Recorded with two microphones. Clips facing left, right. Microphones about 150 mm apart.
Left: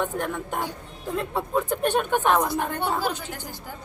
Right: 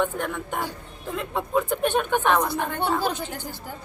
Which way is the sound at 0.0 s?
5° left (ahead or behind).